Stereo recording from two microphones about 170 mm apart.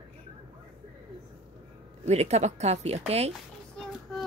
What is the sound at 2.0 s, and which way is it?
Speech, 40° right (ahead or behind).